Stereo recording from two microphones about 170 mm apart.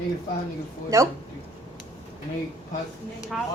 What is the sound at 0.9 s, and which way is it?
Speech, 20° right (ahead or behind).